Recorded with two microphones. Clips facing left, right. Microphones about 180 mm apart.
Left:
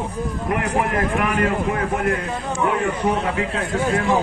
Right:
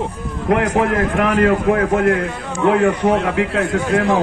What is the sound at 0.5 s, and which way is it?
A man's voice, 85° right.